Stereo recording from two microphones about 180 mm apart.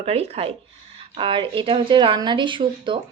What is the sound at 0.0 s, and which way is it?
A woman's voice, 35° right (ahead or behind).